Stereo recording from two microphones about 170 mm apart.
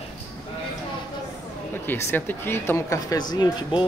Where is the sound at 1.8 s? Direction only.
15° left (ahead or behind).